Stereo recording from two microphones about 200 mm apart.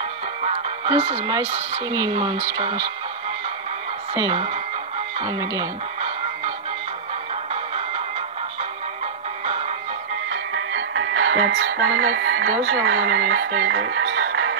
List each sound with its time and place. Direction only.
0.4 s speech: 30° right (ahead or behind)
5.2 s speech: 20° right (ahead or behind)
10.3 s music: 75° right (ahead or behind); by 12.5 s 55° right (ahead or behind)
12.6 s speech: 60° right (ahead or behind)